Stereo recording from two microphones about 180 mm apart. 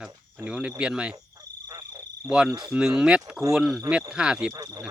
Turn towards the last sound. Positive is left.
turn(degrees=-25)  # may be behind; listen again after turning